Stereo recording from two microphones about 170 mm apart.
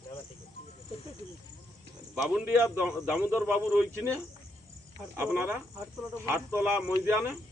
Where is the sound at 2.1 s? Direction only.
10° right (ahead or behind).